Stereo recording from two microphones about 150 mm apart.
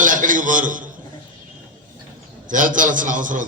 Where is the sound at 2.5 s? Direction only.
60° right (ahead or behind).